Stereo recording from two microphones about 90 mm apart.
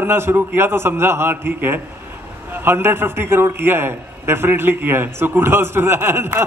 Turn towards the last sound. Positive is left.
turn(degrees=-25)  # may be behind; listen again after turning